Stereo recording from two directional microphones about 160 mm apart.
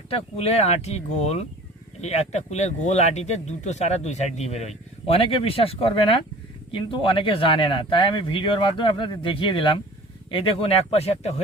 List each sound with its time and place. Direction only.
0.1 s speech: 40° left (ahead or behind)